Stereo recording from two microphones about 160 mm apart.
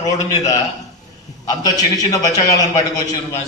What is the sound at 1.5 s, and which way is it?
A man's voice, 25° left (ahead or behind).